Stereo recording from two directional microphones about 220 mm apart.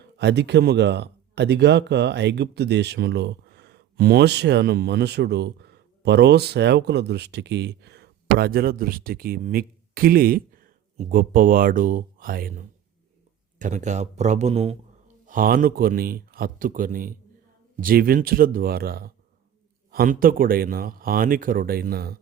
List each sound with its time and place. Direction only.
0.0 s speech: 50° right (ahead or behind)